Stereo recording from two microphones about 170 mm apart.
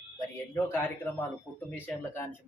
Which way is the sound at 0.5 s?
15° left (ahead or behind).